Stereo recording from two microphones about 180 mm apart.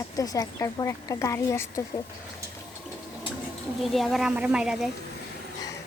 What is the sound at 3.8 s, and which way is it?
Speech, centre (ahead or behind).